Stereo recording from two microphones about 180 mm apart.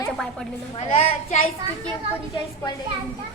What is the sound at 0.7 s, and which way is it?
Speech, 35° left (ahead or behind).